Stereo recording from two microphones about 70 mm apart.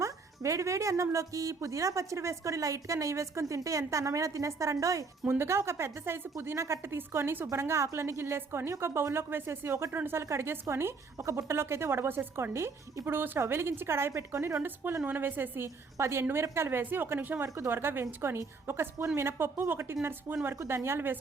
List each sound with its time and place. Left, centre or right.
0.0 s speech: right
5.3 s a woman's voice: right
15.0 s a woman's voice: right